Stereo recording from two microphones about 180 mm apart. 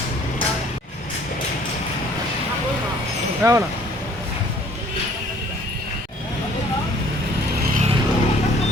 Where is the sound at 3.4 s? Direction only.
15° right (ahead or behind).